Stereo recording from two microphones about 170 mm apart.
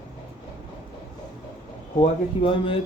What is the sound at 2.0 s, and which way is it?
Speech, 30° left (ahead or behind).